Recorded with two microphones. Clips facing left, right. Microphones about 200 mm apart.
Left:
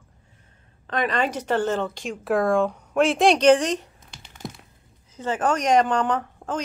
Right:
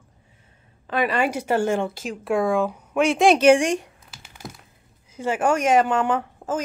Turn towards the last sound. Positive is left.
turn(degrees=-5)  # may be behind; listen again after turning